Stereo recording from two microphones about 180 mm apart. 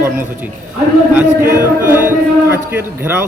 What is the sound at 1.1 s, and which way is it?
Speech, 15° right (ahead or behind).